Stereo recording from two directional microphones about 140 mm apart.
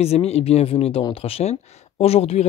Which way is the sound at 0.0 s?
45° left (ahead or behind).